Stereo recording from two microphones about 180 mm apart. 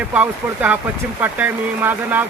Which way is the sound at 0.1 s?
10° right (ahead or behind).